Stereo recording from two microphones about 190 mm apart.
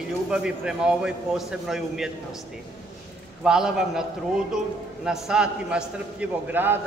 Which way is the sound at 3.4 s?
5° right (ahead or behind).